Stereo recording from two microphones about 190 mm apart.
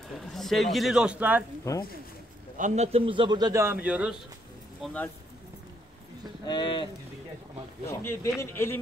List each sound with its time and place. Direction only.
0.2 s a man's voice: centre (ahead or behind)
1.7 s a man's voice: 15° left (ahead or behind)
2.5 s a man's voice: 40° right (ahead or behind); by 4.2 s 5° right (ahead or behind)
4.8 s a man's voice: 10° left (ahead or behind)
6.4 s speech: 25° left (ahead or behind)
7.9 s a man's voice: 15° left (ahead or behind)